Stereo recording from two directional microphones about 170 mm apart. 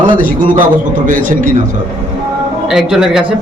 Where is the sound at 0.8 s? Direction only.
50° right (ahead or behind).